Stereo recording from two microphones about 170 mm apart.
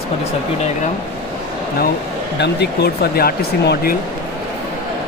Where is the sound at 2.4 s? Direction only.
75° left (ahead or behind).